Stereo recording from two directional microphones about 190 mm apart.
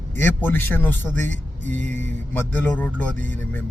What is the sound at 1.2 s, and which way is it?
Speech, 40° right (ahead or behind).